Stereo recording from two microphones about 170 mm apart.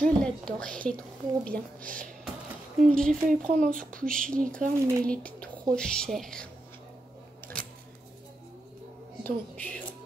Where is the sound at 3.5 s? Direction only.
55° right (ahead or behind).